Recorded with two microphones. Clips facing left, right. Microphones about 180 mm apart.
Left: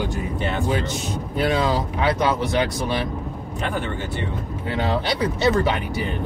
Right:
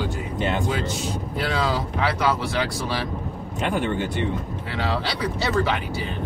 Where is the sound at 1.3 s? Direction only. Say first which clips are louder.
Left 5 dB; 25° left (ahead or behind).